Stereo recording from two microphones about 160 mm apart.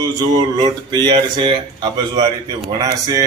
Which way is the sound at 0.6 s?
25° right (ahead or behind).